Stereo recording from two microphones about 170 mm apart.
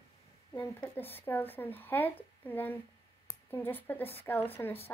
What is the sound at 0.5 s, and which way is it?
A woman's voice, 15° left (ahead or behind).